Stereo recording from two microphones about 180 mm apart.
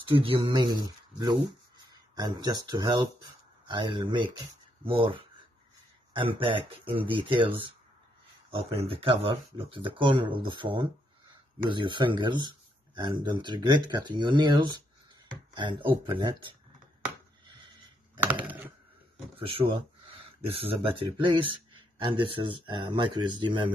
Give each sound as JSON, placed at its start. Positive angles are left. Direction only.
{"t": 0.2, "sound": "speech", "side_deg": -25}
{"t": 6.3, "sound": "speech", "side_deg": -30}
{"t": 18.2, "sound": "typing", "side_deg": -10}
{"t": 19.3, "sound": "a sound", "side_deg": -30}
{"t": 20.8, "sound": "speech", "side_deg": -30}